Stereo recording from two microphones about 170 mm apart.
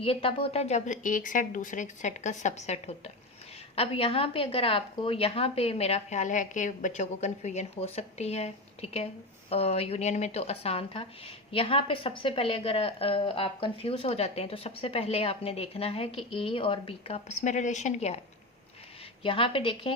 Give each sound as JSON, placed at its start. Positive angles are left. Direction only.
{"t": 0.0, "sound": "a woman's voice", "side_deg": 30}
{"t": 19.2, "sound": "a woman's voice", "side_deg": 30}